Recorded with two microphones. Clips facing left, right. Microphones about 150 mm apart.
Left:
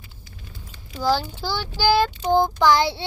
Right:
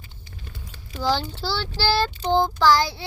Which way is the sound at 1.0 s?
10° left (ahead or behind).